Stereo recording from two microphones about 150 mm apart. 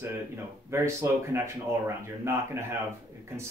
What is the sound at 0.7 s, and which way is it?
Speech, 15° right (ahead or behind).